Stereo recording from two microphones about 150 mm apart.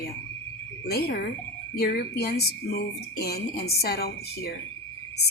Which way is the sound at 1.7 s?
90° left.